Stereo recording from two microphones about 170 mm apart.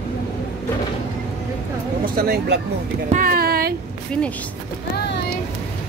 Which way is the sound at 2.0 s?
65° right (ahead or behind).